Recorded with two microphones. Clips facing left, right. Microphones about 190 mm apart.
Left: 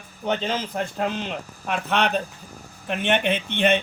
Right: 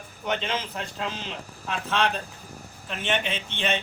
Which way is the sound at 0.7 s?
55° left (ahead or behind).